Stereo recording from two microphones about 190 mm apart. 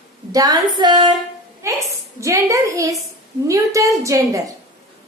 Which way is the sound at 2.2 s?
15° right (ahead or behind).